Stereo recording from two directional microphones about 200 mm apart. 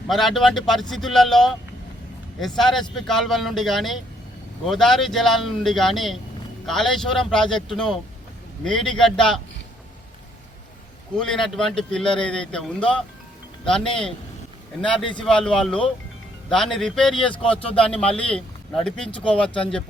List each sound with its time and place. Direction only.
0.1 s a man's voice: centre (ahead or behind)
2.6 s a man's voice: centre (ahead or behind)
11.2 s a man's voice: centre (ahead or behind)
15.1 s a man's voice: 5° left (ahead or behind)
17.4 s speech: 25° left (ahead or behind)
17.7 s a man's voice: 5° left (ahead or behind)